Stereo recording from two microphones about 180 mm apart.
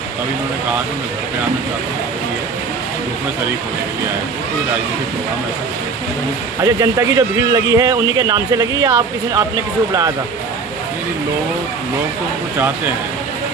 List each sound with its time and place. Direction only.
6.6 s a man's voice: 20° right (ahead or behind)